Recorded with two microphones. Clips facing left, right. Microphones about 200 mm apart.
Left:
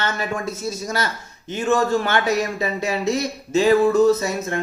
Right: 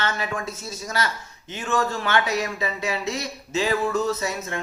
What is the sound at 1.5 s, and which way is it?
Speech, 45° left (ahead or behind).